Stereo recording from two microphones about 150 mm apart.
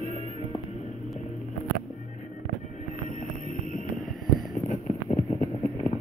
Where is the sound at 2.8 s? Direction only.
55° left (ahead or behind).